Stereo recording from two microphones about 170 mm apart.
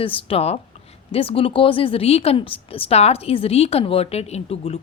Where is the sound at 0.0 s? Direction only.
30° left (ahead or behind).